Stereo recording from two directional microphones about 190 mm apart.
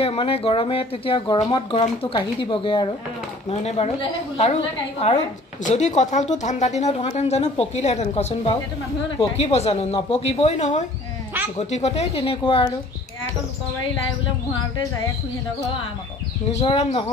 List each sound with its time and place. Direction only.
0.0 s a woman's voice: 30° left (ahead or behind)
16.5 s a woman's voice: 35° left (ahead or behind)